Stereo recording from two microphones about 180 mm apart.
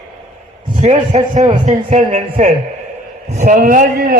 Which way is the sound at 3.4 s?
50° right (ahead or behind).